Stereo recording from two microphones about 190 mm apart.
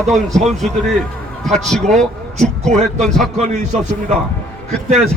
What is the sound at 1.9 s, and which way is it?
Speech, 40° right (ahead or behind).